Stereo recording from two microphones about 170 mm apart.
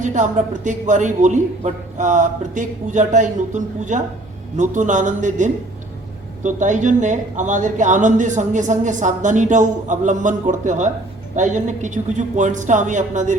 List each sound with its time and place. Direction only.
0.0 s speech: 45° right (ahead or behind)